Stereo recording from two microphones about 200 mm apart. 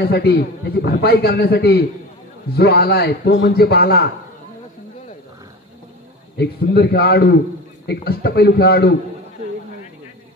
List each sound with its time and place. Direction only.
0.0 s a man's voice: 55° left (ahead or behind)
6.3 s a man's voice: 55° left (ahead or behind)